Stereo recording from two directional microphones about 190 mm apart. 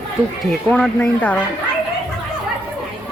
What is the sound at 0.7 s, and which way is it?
Speech, 5° left (ahead or behind).